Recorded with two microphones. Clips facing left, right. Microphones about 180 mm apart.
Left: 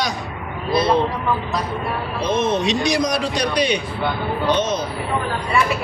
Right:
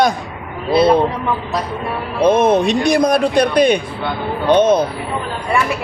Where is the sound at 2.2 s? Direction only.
55° right (ahead or behind).